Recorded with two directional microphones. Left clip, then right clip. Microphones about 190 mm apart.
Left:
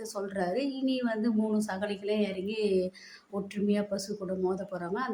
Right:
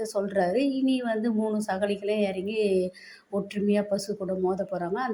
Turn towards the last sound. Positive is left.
turn(degrees=-15)  # may be behind; listen again after turning